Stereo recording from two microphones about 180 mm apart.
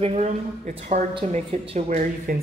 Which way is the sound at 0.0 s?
35° right (ahead or behind).